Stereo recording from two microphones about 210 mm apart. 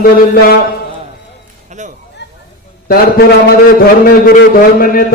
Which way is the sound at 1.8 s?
35° right (ahead or behind).